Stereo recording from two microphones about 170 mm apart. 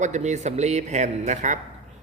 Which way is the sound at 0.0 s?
45° right (ahead or behind).